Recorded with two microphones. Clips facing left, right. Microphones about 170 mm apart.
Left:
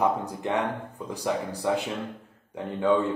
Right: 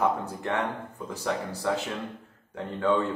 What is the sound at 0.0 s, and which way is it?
Speech, 15° left (ahead or behind).